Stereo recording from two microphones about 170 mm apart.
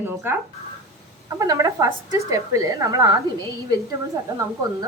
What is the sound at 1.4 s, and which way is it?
Speech, 20° right (ahead or behind).